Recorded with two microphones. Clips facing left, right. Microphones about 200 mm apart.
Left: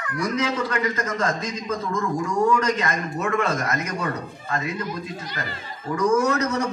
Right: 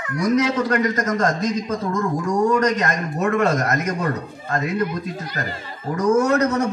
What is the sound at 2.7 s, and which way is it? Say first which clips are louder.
A man's voice: right 3 dB; 45° right (ahead or behind).